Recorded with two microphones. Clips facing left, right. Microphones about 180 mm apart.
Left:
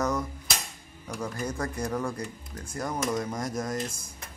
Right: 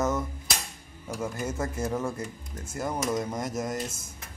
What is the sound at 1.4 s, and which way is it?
Speech, 20° right (ahead or behind).